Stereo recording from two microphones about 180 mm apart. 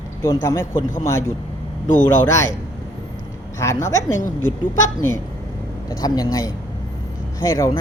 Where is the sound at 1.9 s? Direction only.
45° left (ahead or behind).